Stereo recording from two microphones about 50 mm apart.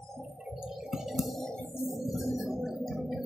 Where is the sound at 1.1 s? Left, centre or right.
Centre.